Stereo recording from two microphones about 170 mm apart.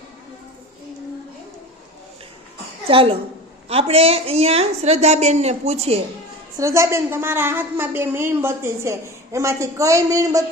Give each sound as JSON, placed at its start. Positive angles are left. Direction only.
{"t": 2.9, "sound": "a woman's voice", "side_deg": -30}
{"t": 6.6, "sound": "a woman's voice", "side_deg": -15}